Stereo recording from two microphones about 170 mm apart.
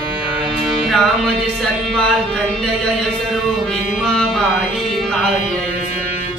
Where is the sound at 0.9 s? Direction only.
Centre (ahead or behind).